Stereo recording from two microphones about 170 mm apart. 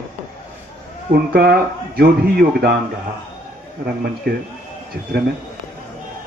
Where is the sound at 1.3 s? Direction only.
60° right (ahead or behind).